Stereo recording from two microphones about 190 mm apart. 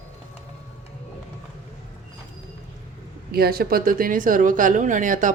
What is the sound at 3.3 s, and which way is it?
Speech, 55° right (ahead or behind).